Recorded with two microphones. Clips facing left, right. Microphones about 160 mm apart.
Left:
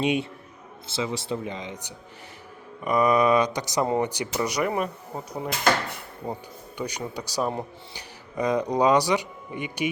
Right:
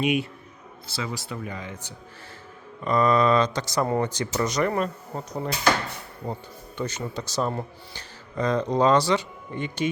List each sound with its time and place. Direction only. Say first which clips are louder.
0.0 s a man's voice: even; 30° left (ahead or behind); by 5.5 s 10° left (ahead or behind)
6.2 s a man's voice: even; 20° left (ahead or behind)